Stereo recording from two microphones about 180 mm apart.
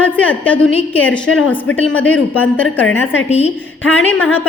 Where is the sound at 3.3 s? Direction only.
35° left (ahead or behind).